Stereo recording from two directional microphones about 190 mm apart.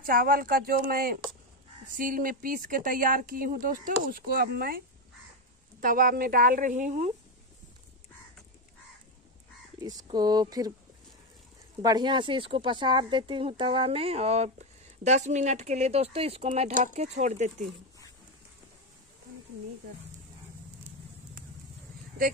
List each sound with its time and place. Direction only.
0.0 s speech: 50° right (ahead or behind)
9.8 s speech: 20° right (ahead or behind)
11.8 s speech: 20° right (ahead or behind); by 17.6 s 40° right (ahead or behind)